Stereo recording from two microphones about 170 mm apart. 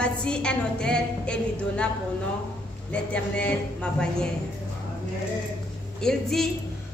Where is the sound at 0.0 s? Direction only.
5° left (ahead or behind).